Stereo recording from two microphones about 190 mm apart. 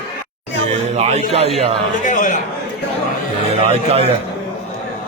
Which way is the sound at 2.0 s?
40° left (ahead or behind).